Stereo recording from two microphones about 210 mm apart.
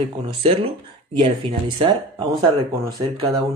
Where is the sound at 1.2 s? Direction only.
25° right (ahead or behind).